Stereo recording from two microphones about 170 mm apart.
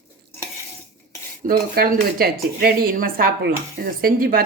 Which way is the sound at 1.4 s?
60° right (ahead or behind).